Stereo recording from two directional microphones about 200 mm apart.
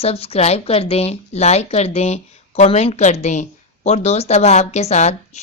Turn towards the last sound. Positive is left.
turn(degrees=35)  # may be behind; listen again after turning